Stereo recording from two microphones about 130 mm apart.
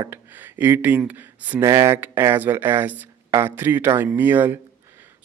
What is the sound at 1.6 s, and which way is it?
Speech, 20° right (ahead or behind).